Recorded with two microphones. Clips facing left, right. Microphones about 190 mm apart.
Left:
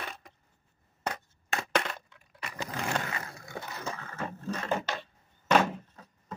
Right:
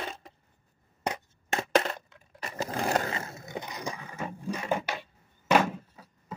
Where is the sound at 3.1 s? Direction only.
25° right (ahead or behind).